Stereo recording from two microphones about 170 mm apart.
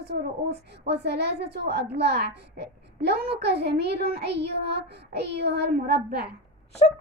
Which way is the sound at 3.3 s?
80° right.